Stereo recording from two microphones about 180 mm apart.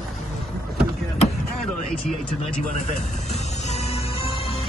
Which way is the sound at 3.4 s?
35° left (ahead or behind).